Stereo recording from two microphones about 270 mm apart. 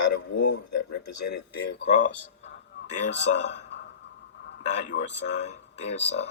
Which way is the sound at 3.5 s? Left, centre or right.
Left.